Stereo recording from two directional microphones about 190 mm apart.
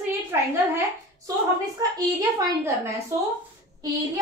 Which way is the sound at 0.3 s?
15° right (ahead or behind).